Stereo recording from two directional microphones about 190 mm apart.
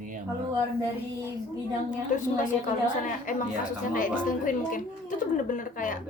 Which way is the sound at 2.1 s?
40° left (ahead or behind).